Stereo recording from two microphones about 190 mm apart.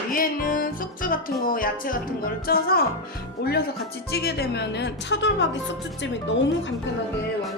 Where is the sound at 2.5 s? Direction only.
50° left (ahead or behind).